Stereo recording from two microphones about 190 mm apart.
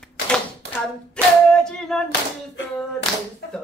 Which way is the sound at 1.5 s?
5° left (ahead or behind).